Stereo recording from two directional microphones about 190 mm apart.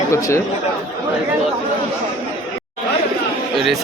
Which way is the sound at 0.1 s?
15° left (ahead or behind).